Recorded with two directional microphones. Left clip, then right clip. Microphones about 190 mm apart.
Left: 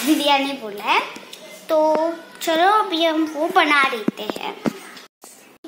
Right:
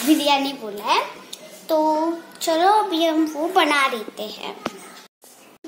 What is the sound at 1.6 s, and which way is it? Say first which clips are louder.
Speech: left 2 dB; 15° right (ahead or behind).